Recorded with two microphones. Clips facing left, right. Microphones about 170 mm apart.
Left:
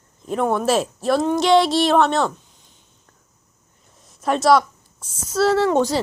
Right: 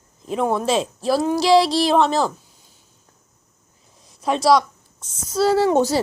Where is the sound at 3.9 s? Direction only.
Centre (ahead or behind).